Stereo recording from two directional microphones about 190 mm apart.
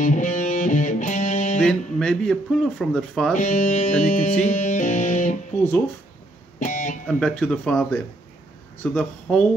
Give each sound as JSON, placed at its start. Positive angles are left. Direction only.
{"t": 0.0, "sound": "music", "side_deg": 40}
{"t": 1.6, "sound": "speech", "side_deg": 5}
{"t": 3.3, "sound": "music", "side_deg": 40}
{"t": 6.6, "sound": "guitar", "side_deg": 40}
{"t": 7.1, "sound": "speech", "side_deg": 5}